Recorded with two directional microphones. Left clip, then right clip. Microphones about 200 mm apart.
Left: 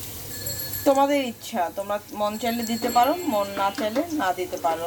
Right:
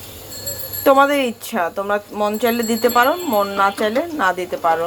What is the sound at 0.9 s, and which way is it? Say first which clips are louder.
Speech: right 7 dB; 20° right (ahead or behind).